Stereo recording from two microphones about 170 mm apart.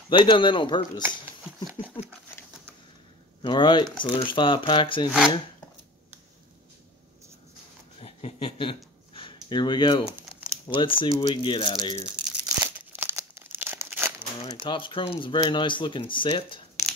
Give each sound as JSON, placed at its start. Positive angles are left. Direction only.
{"t": 0.1, "sound": "speech", "side_deg": 30}
{"t": 1.0, "sound": "shuffling cards", "side_deg": -10}
{"t": 3.4, "sound": "speech", "side_deg": 30}
{"t": 8.0, "sound": "a sound", "side_deg": 35}
{"t": 10.7, "sound": "speech", "side_deg": 30}
{"t": 12.2, "sound": "crumpling", "side_deg": -5}
{"t": 14.5, "sound": "speech", "side_deg": 30}